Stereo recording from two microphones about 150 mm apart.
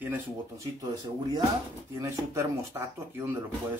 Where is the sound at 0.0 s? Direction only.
15° right (ahead or behind).